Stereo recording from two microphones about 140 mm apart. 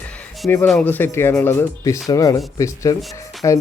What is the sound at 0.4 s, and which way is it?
Speech, 20° left (ahead or behind).